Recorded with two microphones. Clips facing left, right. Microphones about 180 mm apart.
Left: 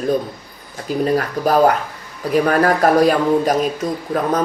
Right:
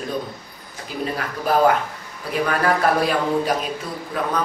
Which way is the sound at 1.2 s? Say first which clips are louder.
Left 2 dB; 40° left (ahead or behind).